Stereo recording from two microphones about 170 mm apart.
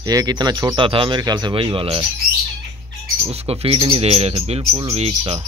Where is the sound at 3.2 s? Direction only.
35° right (ahead or behind).